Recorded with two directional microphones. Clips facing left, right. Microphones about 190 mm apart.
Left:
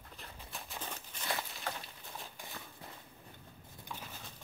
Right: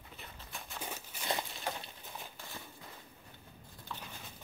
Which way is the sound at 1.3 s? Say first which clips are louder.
Right 2 dB; 20° right (ahead or behind).